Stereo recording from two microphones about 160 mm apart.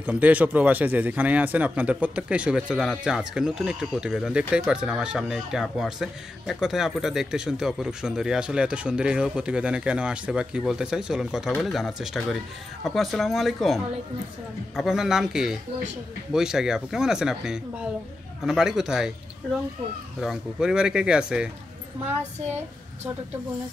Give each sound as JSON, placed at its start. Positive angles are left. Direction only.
{"t": 0.0, "sound": "a man's voice", "side_deg": -10}
{"t": 20.2, "sound": "a man's voice", "side_deg": -5}